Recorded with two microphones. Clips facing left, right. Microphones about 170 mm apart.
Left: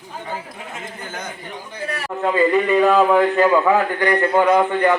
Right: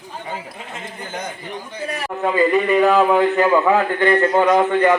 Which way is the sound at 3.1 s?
15° right (ahead or behind).